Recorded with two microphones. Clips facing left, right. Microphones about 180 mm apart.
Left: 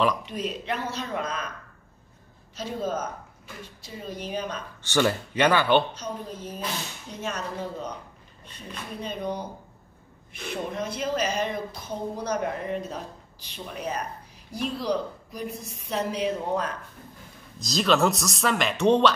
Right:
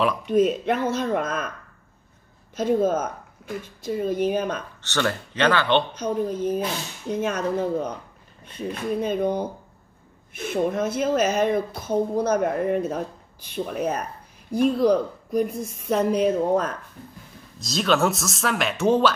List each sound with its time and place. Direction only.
0.2 s speech: 50° right (ahead or behind)
2.5 s speech: 50° right (ahead or behind)
4.8 s speech: 10° left (ahead or behind)
5.9 s speech: 55° right (ahead or behind)
17.6 s speech: centre (ahead or behind)